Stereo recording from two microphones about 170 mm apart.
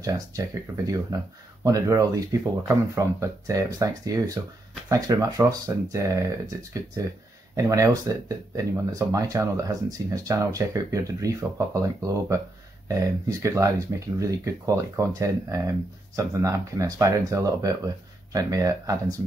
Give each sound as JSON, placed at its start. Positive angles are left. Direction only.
{"t": 1.1, "sound": "speech", "side_deg": -20}